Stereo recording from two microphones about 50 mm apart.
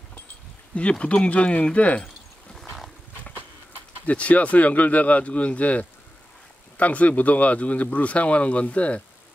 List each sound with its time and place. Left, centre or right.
0.7 s speech: left
4.0 s speech: left